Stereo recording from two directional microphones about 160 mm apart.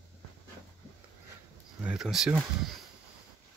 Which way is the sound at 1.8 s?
5° right (ahead or behind).